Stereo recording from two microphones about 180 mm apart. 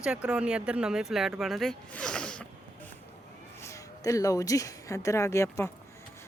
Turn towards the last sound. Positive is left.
turn(degrees=15)  # may be behind; listen again after turning